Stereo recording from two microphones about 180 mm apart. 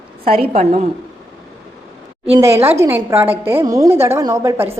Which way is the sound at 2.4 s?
15° right (ahead or behind).